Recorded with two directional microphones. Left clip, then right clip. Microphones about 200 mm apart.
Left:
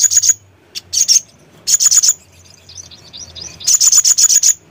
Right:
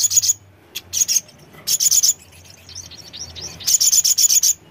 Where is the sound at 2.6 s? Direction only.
40° right (ahead or behind).